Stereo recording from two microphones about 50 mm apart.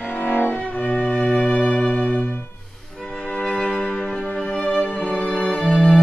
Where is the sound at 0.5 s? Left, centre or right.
Left.